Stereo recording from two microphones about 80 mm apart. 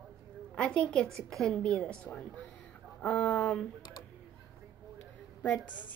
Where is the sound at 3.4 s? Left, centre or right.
Centre.